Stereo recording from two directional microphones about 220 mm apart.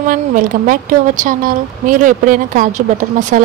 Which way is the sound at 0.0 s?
40° right (ahead or behind).